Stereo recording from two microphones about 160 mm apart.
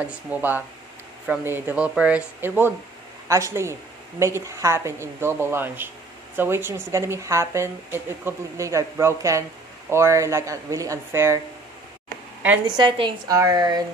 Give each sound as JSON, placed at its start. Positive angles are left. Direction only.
{"t": 0.0, "sound": "a woman's voice", "side_deg": -10}
{"t": 12.6, "sound": "speech", "side_deg": -30}